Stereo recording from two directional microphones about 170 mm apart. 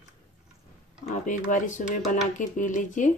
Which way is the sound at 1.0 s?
45° left (ahead or behind).